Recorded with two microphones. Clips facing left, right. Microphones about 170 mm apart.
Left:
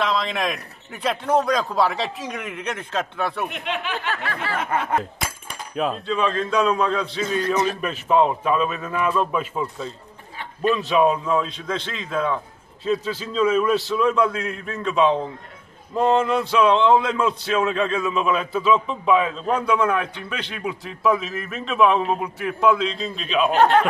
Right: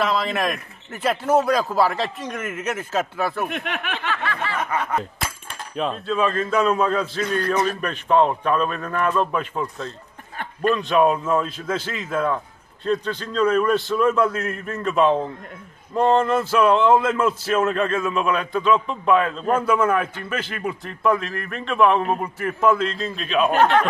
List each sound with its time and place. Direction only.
0.0 s a man's voice: 5° right (ahead or behind)
3.4 s speech: 55° right (ahead or behind)
4.1 s a sound: 40° left (ahead or behind)
5.8 s a man's voice: centre (ahead or behind)
10.3 s a sound: 50° right (ahead or behind)
10.7 s a man's voice: centre (ahead or behind)